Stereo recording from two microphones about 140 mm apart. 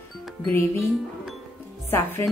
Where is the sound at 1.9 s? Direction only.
20° left (ahead or behind).